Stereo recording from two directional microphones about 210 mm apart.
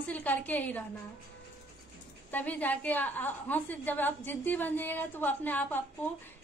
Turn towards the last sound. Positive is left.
turn(degrees=10)  # may be behind; listen again after turning